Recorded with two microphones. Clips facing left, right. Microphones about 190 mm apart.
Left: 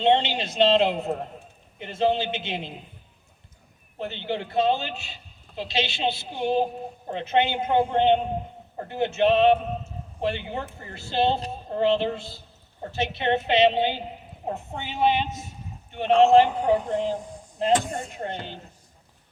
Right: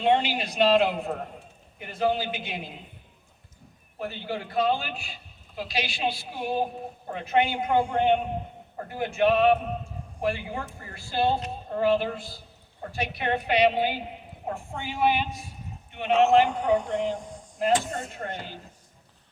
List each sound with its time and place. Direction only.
0.0 s a man's voice: 25° left (ahead or behind)
3.9 s a man's voice: 25° left (ahead or behind)
17.6 s a man's voice: 15° left (ahead or behind)